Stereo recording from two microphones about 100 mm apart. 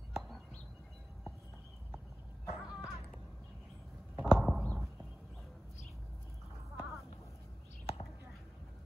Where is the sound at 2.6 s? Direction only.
10° right (ahead or behind).